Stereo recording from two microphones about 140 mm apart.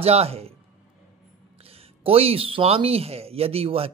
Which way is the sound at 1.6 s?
45° right (ahead or behind).